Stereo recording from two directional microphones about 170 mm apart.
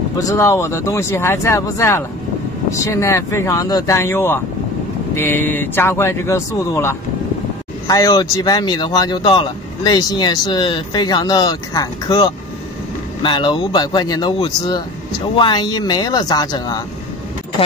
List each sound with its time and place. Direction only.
0.2 s speech: 20° left (ahead or behind)